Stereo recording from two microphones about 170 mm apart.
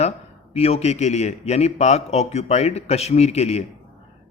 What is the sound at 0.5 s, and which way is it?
A man's voice, 35° left (ahead or behind).